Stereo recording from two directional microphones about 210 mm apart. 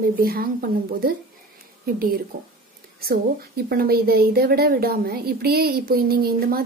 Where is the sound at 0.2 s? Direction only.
45° right (ahead or behind).